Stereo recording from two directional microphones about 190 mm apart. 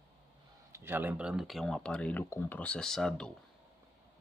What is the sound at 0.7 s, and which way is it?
Speech, 10° right (ahead or behind).